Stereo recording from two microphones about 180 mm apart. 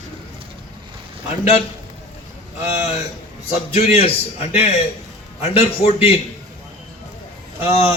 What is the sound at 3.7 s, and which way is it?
A man's voice, 35° left (ahead or behind).